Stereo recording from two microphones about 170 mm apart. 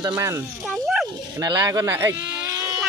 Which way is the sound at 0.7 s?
Centre (ahead or behind).